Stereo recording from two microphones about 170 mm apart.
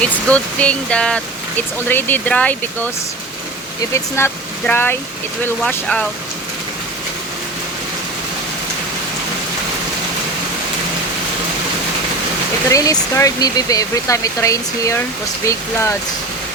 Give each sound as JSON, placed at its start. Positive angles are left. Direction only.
{"t": 0.0, "sound": "speech", "side_deg": 5}
{"t": 3.9, "sound": "speech", "side_deg": 15}
{"t": 12.7, "sound": "speech", "side_deg": 20}